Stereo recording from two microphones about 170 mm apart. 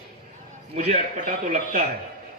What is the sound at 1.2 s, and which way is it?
Speech, 50° right (ahead or behind).